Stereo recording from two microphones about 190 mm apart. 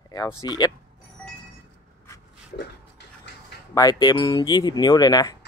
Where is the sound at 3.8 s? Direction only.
20° left (ahead or behind).